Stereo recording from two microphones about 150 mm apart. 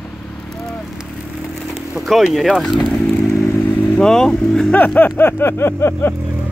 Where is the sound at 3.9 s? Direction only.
5° left (ahead or behind).